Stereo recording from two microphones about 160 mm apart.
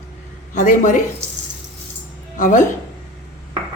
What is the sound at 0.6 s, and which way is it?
Speech, 50° left (ahead or behind).